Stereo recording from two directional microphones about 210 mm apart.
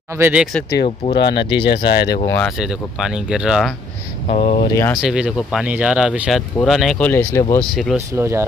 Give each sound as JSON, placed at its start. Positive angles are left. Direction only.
{"t": 0.2, "sound": "speech", "side_deg": -5}
{"t": 0.7, "sound": "speech", "side_deg": 30}
{"t": 1.1, "sound": "speech", "side_deg": 55}
{"t": 2.2, "sound": "speech", "side_deg": 10}
{"t": 2.6, "sound": "speech", "side_deg": -5}
{"t": 4.3, "sound": "speech", "side_deg": 30}
{"t": 5.0, "sound": "speech", "side_deg": -5}
{"t": 8.1, "sound": "speech", "side_deg": -10}